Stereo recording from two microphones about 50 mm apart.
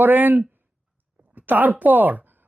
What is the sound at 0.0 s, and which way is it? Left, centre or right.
Speech, right.